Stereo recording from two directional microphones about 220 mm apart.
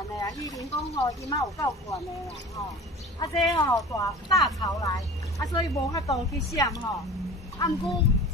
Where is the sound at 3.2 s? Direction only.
15° left (ahead or behind).